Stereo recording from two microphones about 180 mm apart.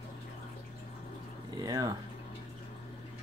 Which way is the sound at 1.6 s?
20° right (ahead or behind).